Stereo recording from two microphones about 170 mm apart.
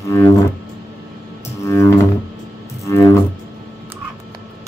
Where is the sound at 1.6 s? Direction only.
15° left (ahead or behind).